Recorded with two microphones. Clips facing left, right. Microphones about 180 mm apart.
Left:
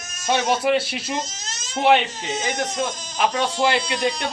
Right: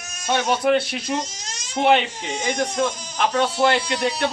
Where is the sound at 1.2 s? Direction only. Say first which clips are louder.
Even; 10° right (ahead or behind).